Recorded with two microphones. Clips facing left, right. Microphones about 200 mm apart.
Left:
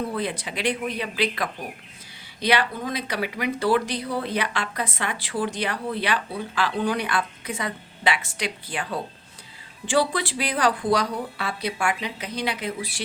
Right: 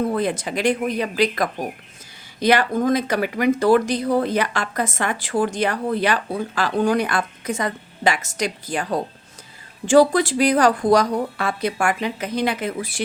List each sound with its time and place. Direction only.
0.1 s speech: 45° right (ahead or behind)